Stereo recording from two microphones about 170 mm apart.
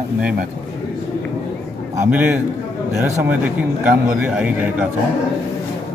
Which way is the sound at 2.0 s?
10° right (ahead or behind).